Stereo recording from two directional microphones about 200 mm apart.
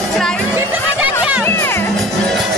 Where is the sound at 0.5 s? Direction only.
10° right (ahead or behind).